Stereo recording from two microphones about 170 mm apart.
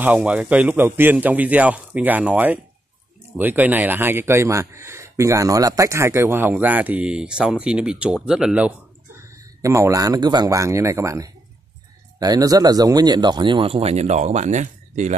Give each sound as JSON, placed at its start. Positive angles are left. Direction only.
{"t": 0.0, "sound": "speech", "side_deg": -10}
{"t": 9.6, "sound": "speech", "side_deg": -20}